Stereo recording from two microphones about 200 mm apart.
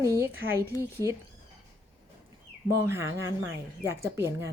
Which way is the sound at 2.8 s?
15° right (ahead or behind).